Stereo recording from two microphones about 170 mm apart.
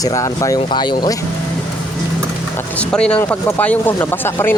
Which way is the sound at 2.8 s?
5° left (ahead or behind).